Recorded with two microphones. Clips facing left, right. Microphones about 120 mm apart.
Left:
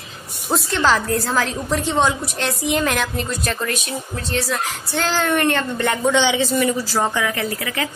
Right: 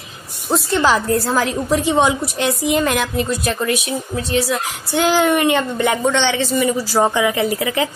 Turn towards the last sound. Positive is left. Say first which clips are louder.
# right 6 dB
turn(degrees=-20)  # may be behind; listen again after turning